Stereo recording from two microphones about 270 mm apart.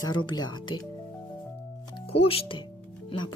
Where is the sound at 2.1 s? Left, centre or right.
Left.